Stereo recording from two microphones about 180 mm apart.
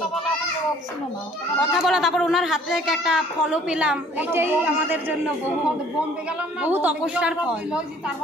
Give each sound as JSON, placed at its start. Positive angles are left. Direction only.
{"t": 1.7, "sound": "speech", "side_deg": 0}
{"t": 6.6, "sound": "a woman's voice", "side_deg": -10}